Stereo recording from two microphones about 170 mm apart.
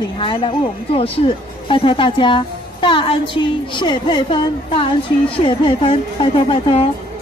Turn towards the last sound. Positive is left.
turn(degrees=35)  # may be behind; listen again after turning